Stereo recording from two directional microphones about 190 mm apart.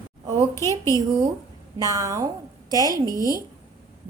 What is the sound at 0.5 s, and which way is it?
Speech, 15° left (ahead or behind).